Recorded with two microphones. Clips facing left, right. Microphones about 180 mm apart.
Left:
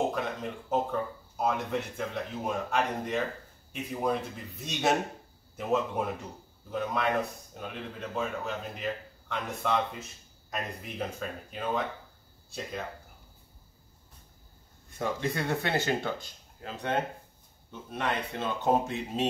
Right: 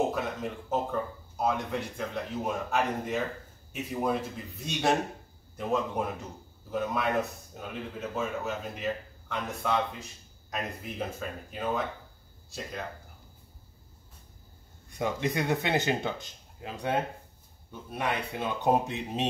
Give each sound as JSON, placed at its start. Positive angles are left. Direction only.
{"t": 0.1, "sound": "a man's voice", "side_deg": -5}
{"t": 15.0, "sound": "speech", "side_deg": -15}